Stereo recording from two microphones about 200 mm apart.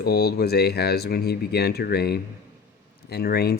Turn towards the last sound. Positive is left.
turn(degrees=50)  # may be behind; listen again after turning